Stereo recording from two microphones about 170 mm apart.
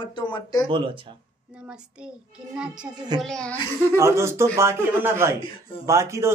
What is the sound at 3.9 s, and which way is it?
Speech, 15° right (ahead or behind).